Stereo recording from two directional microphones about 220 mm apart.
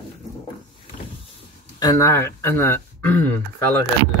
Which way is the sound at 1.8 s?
15° left (ahead or behind).